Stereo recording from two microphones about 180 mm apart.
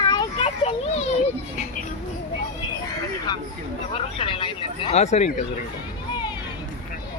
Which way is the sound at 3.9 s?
30° left (ahead or behind).